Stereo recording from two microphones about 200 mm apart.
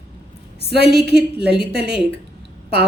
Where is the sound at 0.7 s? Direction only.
55° right (ahead or behind).